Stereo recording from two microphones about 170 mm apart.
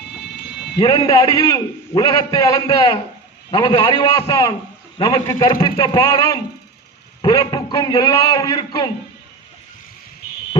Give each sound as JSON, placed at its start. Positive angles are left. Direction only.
{"t": 0.8, "sound": "a man's voice", "side_deg": 25}